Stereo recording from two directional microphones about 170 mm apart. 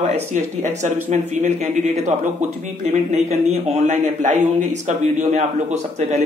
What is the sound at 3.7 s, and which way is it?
A man's voice, 40° right (ahead or behind).